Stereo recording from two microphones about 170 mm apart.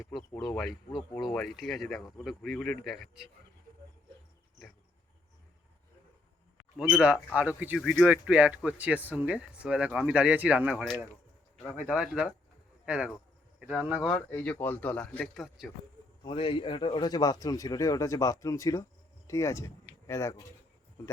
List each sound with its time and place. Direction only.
0.2 s speech: 25° left (ahead or behind)
0.4 s speech: centre (ahead or behind)
6.7 s speech: 5° right (ahead or behind)
11.5 s a sound: 5° left (ahead or behind)
11.8 s speech: 5° right (ahead or behind)
14.0 s speech: 10° left (ahead or behind)
16.2 s speech: 30° left (ahead or behind)